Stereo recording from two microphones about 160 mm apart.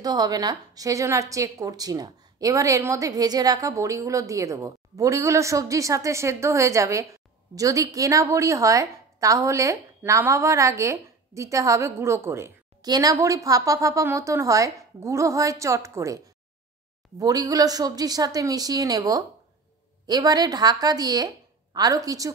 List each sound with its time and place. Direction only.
0.0 s a woman's voice: 25° right (ahead or behind)
17.2 s a woman's voice: 20° right (ahead or behind)